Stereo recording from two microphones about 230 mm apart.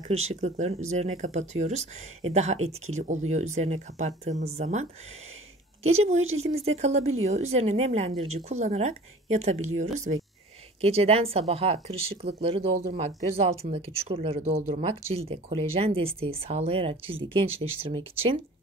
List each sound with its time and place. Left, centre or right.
0.1 s speech: right
5.9 s speech: right
10.8 s speech: right